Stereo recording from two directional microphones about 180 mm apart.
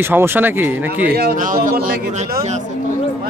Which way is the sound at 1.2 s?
55° right (ahead or behind).